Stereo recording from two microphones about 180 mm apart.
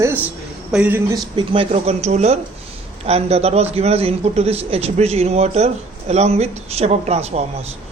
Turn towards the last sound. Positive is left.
turn(degrees=-35)  # may be behind; listen again after turning